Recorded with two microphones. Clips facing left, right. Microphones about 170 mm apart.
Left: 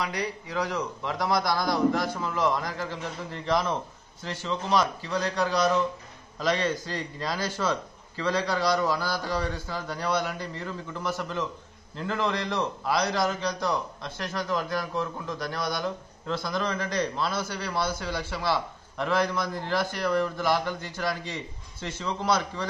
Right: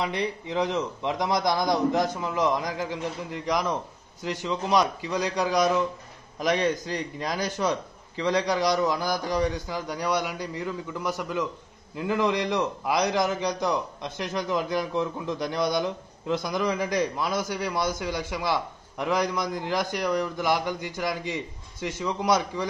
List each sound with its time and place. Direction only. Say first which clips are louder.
0.0 s a man's voice: right 3 dB; 25° right (ahead or behind)